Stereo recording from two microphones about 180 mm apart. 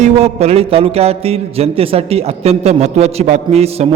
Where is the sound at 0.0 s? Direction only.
35° right (ahead or behind).